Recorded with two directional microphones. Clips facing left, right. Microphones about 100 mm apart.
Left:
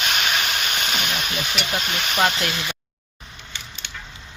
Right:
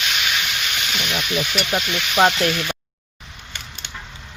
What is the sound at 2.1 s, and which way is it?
Speech, 35° right (ahead or behind).